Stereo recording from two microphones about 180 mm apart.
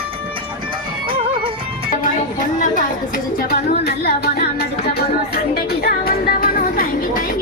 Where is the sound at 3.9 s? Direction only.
60° left (ahead or behind).